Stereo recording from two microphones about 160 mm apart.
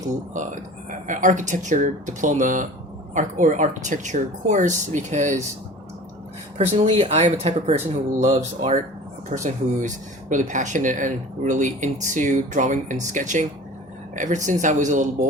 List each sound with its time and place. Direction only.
0.3 s speech: 55° right (ahead or behind)
6.6 s speech: 45° right (ahead or behind)